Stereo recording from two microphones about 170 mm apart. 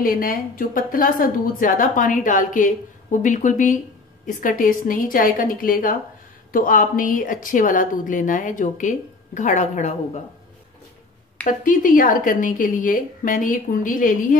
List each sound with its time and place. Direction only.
0.0 s a woman's voice: 55° left (ahead or behind)
11.4 s a woman's voice: 50° left (ahead or behind)